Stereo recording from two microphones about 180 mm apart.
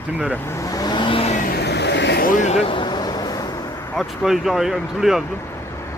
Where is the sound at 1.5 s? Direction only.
70° left (ahead or behind); by 3.5 s 20° left (ahead or behind).